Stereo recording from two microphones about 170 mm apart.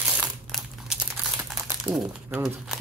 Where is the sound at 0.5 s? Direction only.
Centre (ahead or behind).